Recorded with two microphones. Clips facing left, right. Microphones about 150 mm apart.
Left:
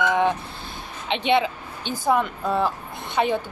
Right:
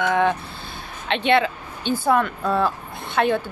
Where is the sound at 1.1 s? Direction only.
15° left (ahead or behind).